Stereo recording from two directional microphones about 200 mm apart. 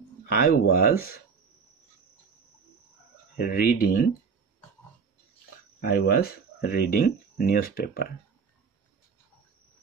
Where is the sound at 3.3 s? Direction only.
50° left (ahead or behind).